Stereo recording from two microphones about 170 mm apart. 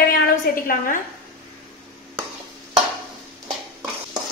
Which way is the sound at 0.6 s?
55° left (ahead or behind).